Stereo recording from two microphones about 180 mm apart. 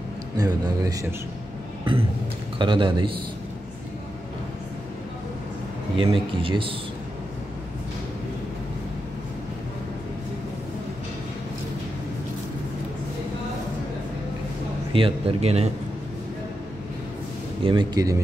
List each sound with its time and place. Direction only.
0.4 s speech: 20° right (ahead or behind)
2.6 s speech: 25° right (ahead or behind)
5.9 s speech: 30° right (ahead or behind)
14.9 s speech: 30° right (ahead or behind)
17.6 s speech: 25° right (ahead or behind)